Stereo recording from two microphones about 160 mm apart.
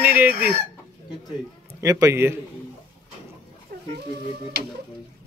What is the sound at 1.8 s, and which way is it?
Speech, 20° right (ahead or behind).